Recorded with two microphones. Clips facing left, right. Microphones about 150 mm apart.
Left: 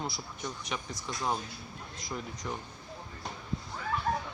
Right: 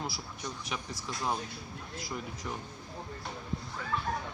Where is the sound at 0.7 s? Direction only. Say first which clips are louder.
Left 1 dB; centre (ahead or behind).